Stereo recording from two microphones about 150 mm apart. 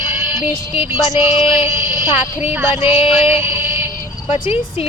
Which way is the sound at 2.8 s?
40° left (ahead or behind).